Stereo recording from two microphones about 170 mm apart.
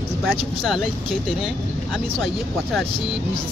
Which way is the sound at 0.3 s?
Centre (ahead or behind).